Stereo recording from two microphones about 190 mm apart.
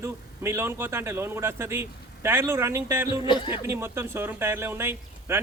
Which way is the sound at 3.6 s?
10° right (ahead or behind).